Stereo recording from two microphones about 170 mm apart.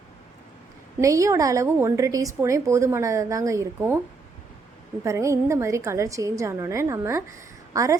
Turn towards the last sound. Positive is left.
turn(degrees=-20)  # may be behind; listen again after turning